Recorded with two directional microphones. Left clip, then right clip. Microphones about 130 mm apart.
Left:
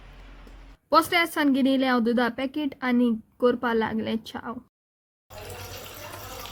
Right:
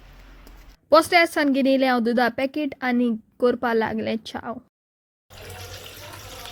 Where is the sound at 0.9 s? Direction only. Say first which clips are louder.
Right 5 dB; 40° right (ahead or behind).